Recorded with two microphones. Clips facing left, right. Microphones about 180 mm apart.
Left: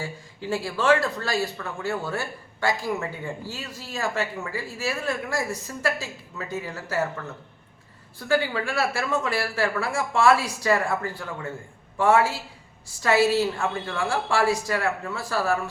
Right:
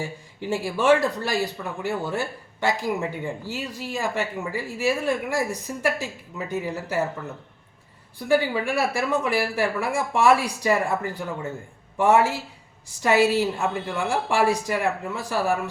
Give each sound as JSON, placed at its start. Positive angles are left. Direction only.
{"t": 0.0, "sound": "speech", "side_deg": -15}
{"t": 8.2, "sound": "speech", "side_deg": -15}